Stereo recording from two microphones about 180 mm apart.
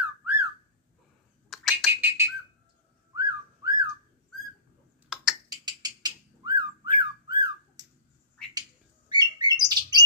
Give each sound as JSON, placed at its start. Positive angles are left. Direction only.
{"t": 0.0, "sound": "a sound", "side_deg": -10}
{"t": 1.5, "sound": "a sound", "side_deg": 0}
{"t": 1.9, "sound": "bird", "side_deg": -10}
{"t": 3.2, "sound": "whistling", "side_deg": -20}
{"t": 5.1, "sound": "finger snapping", "side_deg": -5}
{"t": 5.5, "sound": "whistling", "side_deg": -20}
{"t": 9.1, "sound": "bird", "side_deg": -20}